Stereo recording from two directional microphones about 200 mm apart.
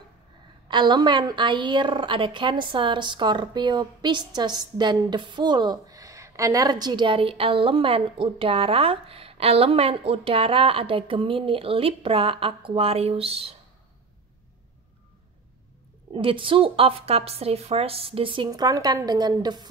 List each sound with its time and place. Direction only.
0.7 s a woman's voice: 25° right (ahead or behind)
16.1 s a woman's voice: 25° right (ahead or behind)